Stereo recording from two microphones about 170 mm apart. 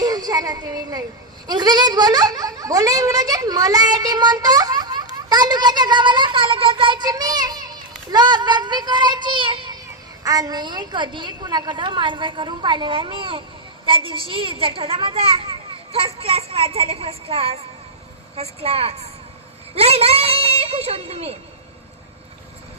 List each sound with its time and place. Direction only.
0.0 s a woman's voice: 20° right (ahead or behind)